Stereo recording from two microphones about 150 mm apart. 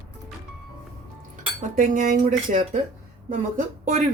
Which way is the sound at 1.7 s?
60° right (ahead or behind).